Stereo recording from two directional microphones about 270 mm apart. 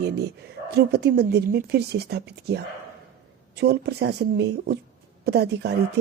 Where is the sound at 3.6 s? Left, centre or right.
Right.